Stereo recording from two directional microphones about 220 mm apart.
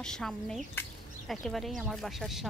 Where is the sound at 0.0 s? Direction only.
5° left (ahead or behind).